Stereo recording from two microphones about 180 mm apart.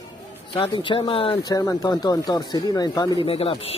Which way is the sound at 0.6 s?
30° left (ahead or behind).